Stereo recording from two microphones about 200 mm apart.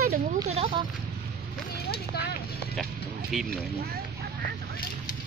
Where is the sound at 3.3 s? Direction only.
Centre (ahead or behind).